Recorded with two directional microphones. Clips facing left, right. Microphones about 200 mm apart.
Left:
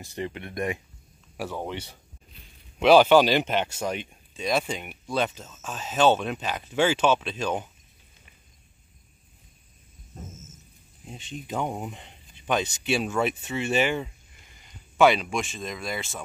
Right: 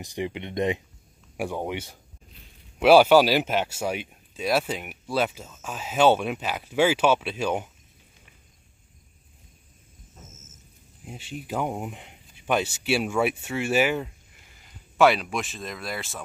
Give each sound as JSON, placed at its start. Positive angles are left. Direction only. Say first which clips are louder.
{"t": 0.0, "sound": "speech", "louder": "right 2 dB", "side_deg": -15}
{"t": 11.1, "sound": "speech", "louder": "right 1 dB", "side_deg": -10}